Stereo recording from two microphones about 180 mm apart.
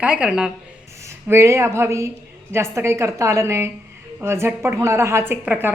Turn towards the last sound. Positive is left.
turn(degrees=-10)  # may be behind; listen again after turning